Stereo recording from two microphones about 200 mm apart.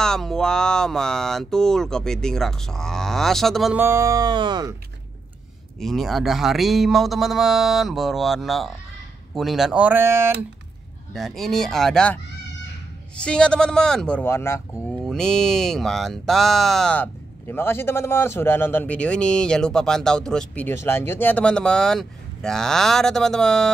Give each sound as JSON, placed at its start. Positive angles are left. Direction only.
{"t": 0.0, "sound": "speech", "side_deg": 5}
{"t": 3.8, "sound": "speech", "side_deg": -15}
{"t": 5.8, "sound": "speech", "side_deg": 0}
{"t": 11.1, "sound": "speech", "side_deg": 0}